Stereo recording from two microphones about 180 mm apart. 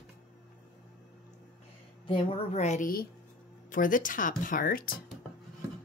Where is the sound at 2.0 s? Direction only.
30° left (ahead or behind); by 5.0 s 50° left (ahead or behind).